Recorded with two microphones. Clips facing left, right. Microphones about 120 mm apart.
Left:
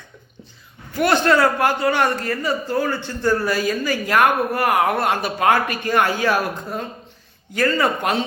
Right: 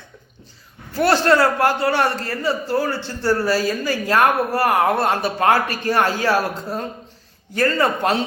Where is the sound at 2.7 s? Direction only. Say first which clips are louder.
Even; 30° right (ahead or behind).